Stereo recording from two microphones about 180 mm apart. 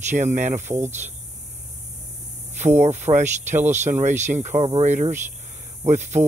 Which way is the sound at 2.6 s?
40° right (ahead or behind).